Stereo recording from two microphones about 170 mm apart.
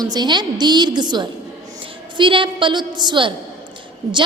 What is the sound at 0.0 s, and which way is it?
A woman's voice, 25° right (ahead or behind).